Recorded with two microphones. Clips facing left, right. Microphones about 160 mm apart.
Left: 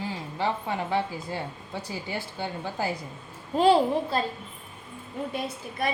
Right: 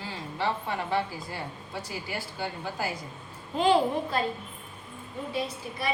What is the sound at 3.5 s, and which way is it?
Speech, 35° left (ahead or behind).